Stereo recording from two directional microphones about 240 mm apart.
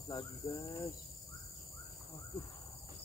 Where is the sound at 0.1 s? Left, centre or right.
Centre.